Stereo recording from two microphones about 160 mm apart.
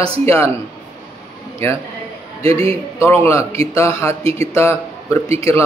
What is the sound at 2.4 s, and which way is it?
Speech, 35° right (ahead or behind).